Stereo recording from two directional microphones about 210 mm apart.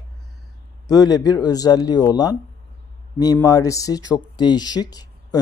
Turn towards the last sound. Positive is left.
turn(degrees=20)  # may be behind; listen again after turning